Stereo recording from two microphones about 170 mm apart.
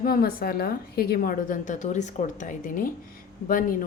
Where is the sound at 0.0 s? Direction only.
60° left (ahead or behind).